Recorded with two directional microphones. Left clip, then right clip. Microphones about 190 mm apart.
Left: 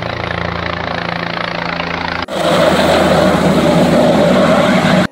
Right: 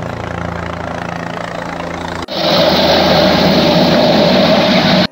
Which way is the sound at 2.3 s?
Centre (ahead or behind).